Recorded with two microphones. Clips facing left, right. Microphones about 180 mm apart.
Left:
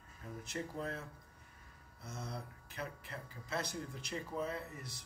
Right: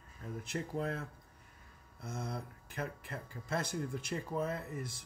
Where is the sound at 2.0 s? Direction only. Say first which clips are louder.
Right 4 dB; 55° right (ahead or behind).